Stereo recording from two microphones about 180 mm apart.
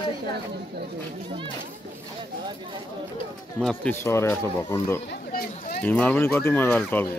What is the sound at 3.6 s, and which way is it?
Speech, 10° left (ahead or behind).